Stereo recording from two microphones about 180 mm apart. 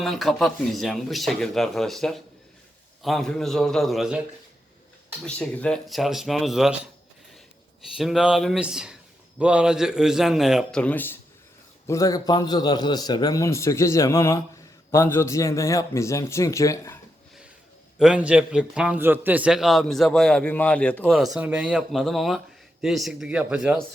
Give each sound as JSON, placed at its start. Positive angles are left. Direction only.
{"t": 0.0, "sound": "a man's voice", "side_deg": 0}
{"t": 5.2, "sound": "a man's voice", "side_deg": 5}
{"t": 7.9, "sound": "a man's voice", "side_deg": 0}
{"t": 18.0, "sound": "a man's voice", "side_deg": -5}